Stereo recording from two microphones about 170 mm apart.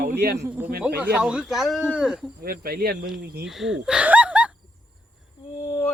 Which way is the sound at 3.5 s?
Centre (ahead or behind).